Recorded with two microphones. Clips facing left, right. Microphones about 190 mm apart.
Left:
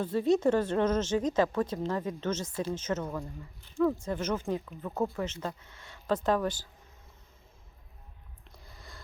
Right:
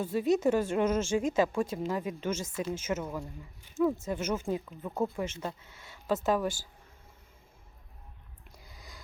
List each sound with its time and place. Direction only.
0.0 s a woman's voice: 10° right (ahead or behind)
2.5 s speech: 30° left (ahead or behind)
2.7 s a woman's voice: 10° right (ahead or behind)